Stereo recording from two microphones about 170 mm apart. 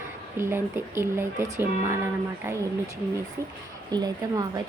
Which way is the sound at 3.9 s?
25° right (ahead or behind).